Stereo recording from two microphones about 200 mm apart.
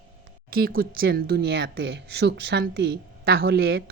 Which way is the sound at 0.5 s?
45° right (ahead or behind).